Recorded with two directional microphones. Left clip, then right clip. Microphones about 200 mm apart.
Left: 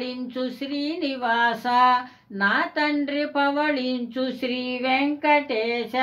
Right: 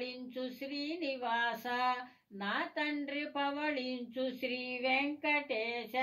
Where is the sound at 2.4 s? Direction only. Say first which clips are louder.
Left 14 dB; 45° left (ahead or behind).